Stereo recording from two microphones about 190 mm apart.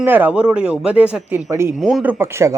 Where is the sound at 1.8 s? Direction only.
Centre (ahead or behind).